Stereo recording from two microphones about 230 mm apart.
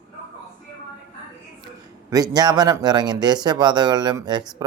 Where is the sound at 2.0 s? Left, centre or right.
Centre.